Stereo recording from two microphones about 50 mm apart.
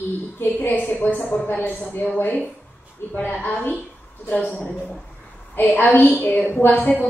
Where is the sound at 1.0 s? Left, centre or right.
Left.